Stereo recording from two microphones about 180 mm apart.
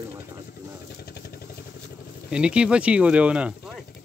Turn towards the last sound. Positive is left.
turn(degrees=-5)  # may be behind; listen again after turning